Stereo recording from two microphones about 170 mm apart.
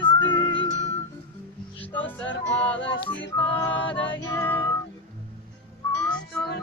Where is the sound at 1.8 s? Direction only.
10° left (ahead or behind).